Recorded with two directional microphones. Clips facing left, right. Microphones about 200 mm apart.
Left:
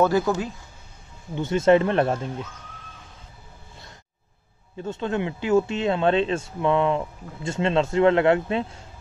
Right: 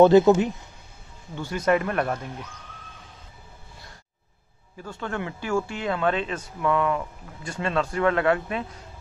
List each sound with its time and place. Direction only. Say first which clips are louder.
0.0 s a man's voice: right 6 dB; 25° right (ahead or behind)
1.3 s speech: left 5 dB; 25° left (ahead or behind)
4.7 s speech: left 5 dB; 20° left (ahead or behind)